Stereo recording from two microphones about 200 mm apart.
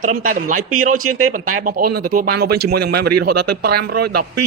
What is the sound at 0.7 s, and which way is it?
Speech, 90° right.